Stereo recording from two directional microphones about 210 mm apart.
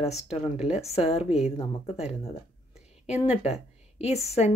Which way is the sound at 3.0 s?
5° right (ahead or behind).